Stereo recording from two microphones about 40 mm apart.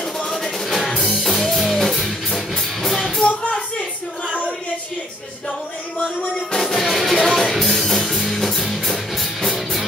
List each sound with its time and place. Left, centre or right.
0.3 s music: centre
3.3 s a sound: left
4.3 s child singing: right
6.6 s music: centre